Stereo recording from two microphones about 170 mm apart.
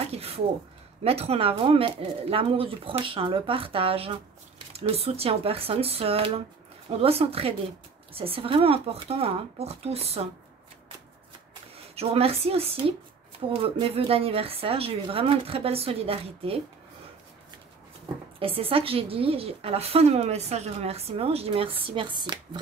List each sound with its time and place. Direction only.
0.0 s a sound: 35° right (ahead or behind)
1.0 s a woman's voice: 35° right (ahead or behind)
11.7 s a woman's voice: 35° right (ahead or behind)
18.4 s a woman's voice: 35° right (ahead or behind)